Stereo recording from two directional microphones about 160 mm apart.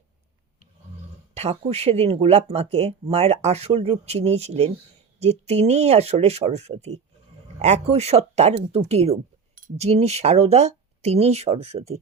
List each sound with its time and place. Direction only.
1.3 s speech: 40° right (ahead or behind)